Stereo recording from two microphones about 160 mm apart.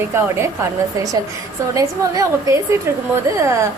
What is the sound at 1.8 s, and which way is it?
Speech, 20° right (ahead or behind).